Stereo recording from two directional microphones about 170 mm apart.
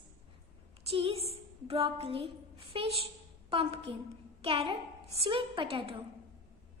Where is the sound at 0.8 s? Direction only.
30° right (ahead or behind).